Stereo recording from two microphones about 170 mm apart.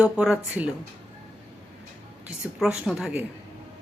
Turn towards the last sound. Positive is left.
turn(degrees=-5)  # may be behind; listen again after turning